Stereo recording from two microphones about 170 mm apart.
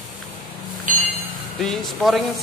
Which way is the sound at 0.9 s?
50° right (ahead or behind).